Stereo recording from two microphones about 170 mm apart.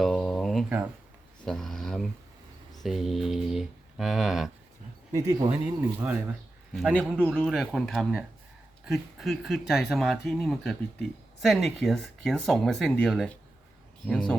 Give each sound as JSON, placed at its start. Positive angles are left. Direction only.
{"t": 0.0, "sound": "a sound", "side_deg": 0}
{"t": 1.5, "sound": "speech", "side_deg": 5}
{"t": 5.1, "sound": "speech", "side_deg": -20}
{"t": 6.7, "sound": "speech", "side_deg": 0}